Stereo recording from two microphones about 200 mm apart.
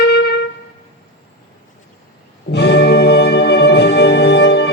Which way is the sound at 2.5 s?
55° left (ahead or behind).